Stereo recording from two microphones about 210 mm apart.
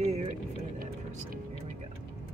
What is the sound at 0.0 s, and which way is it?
Vehicle, 30° right (ahead or behind).